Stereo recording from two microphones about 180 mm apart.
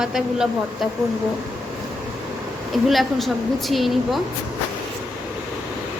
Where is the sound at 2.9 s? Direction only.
Centre (ahead or behind).